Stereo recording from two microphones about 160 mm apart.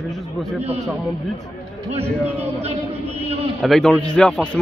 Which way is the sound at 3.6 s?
Centre (ahead or behind).